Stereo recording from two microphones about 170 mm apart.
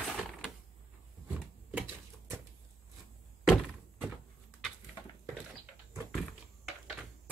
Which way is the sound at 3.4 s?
Centre (ahead or behind).